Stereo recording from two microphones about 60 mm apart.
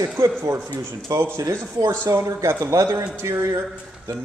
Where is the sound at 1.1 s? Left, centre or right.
Right.